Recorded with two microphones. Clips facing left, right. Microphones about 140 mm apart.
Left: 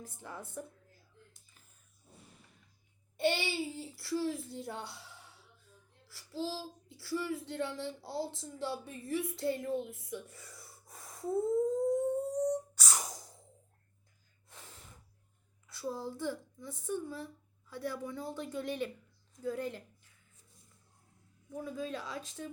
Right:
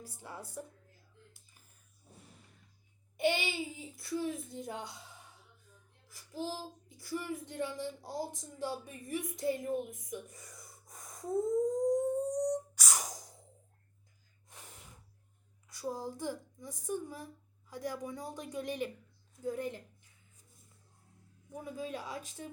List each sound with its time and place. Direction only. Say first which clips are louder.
0.0 s speech: left 1 dB; 10° right (ahead or behind)
3.2 s speech: even; 15° right (ahead or behind)
6.1 s child singing: left 1 dB; 15° right (ahead or behind)
6.9 s speech: left 3 dB; 20° right (ahead or behind)
11.9 s a sound: even; 15° right (ahead or behind)
14.5 s gasp: even; 15° right (ahead or behind)
15.7 s speech: even; 15° right (ahead or behind)
21.5 s speech: left 2 dB; 15° right (ahead or behind)